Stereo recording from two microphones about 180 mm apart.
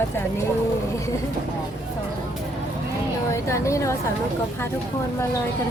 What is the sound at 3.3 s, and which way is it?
Speech, 15° left (ahead or behind).